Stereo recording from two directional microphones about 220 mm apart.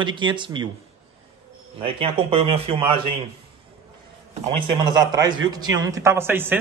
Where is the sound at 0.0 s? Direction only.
20° right (ahead or behind).